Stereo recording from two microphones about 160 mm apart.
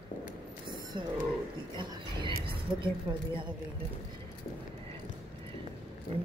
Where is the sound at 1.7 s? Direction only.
30° right (ahead or behind).